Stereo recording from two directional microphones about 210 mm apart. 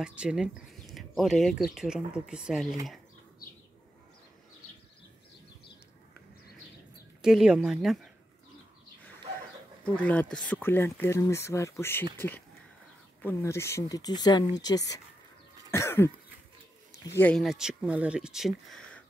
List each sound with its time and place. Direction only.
0.0 s speech: 5° right (ahead or behind)
7.2 s speech: centre (ahead or behind)
9.8 s speech: 5° left (ahead or behind)
13.2 s speech: 10° left (ahead or behind)
15.7 s cough: 10° left (ahead or behind)
17.2 s speech: 5° left (ahead or behind)